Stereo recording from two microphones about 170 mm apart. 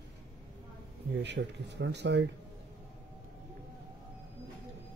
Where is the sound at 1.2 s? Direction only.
90° right.